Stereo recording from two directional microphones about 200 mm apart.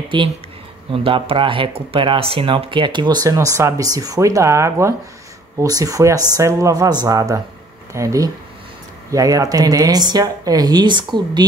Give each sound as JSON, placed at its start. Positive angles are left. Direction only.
{"t": 0.9, "sound": "speech", "side_deg": -25}